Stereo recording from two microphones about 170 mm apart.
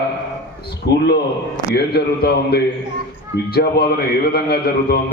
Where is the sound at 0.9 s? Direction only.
85° left.